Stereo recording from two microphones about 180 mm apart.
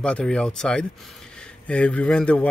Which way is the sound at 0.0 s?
5° left (ahead or behind).